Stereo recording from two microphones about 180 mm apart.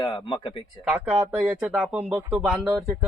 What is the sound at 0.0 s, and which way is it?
Speech, 25° left (ahead or behind).